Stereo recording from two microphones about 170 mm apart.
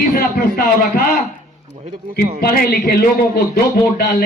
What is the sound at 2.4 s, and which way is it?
Speech, 65° left (ahead or behind).